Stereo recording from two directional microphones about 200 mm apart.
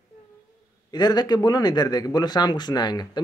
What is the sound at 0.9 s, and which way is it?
Speech, 20° left (ahead or behind).